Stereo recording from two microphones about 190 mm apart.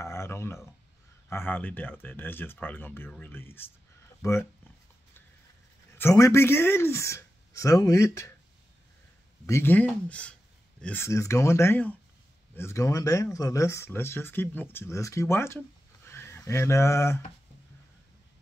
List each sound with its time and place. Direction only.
0.0 s speech: 15° left (ahead or behind)
5.9 s speech: 15° left (ahead or behind)
9.5 s speech: 10° left (ahead or behind)